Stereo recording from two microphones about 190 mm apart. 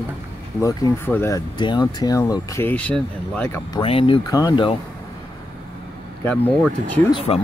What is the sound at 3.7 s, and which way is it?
Speech, 30° left (ahead or behind).